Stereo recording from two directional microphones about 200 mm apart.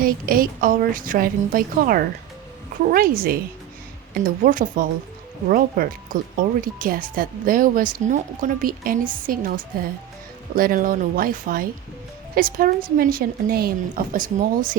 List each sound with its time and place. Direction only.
0.0 s speech: 45° right (ahead or behind)